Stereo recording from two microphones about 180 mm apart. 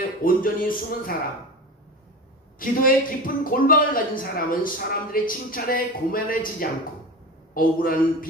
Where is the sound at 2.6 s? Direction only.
50° left (ahead or behind).